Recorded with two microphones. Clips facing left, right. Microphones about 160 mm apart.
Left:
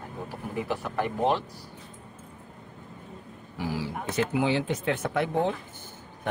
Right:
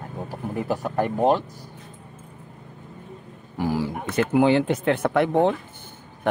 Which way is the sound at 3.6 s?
50° right (ahead or behind).